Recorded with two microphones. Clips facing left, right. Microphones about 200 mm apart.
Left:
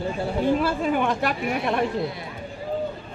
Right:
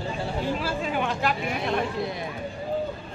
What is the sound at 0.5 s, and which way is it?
Speech, 50° left (ahead or behind).